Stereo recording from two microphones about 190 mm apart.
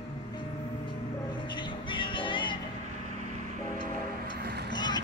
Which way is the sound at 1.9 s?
25° left (ahead or behind).